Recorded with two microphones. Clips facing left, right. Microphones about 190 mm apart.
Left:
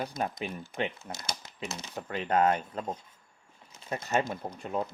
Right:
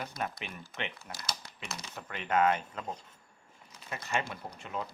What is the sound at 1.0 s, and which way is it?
Speech, 25° left (ahead or behind).